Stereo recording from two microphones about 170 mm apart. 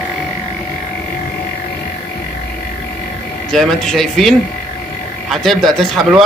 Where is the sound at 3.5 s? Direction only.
Centre (ahead or behind).